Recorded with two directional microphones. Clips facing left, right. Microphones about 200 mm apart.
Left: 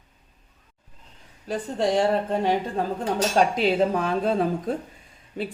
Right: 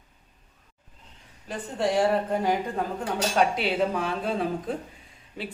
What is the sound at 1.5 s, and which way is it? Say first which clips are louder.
Speech: left 3 dB; 30° left (ahead or behind).